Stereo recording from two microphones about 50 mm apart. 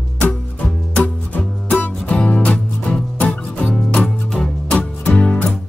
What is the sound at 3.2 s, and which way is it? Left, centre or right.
Music, left.